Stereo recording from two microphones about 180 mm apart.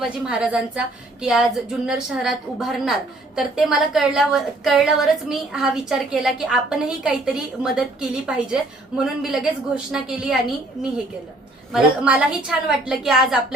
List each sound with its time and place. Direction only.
0.0 s a woman's voice: 5° right (ahead or behind)
11.7 s a woman's voice: 5° right (ahead or behind)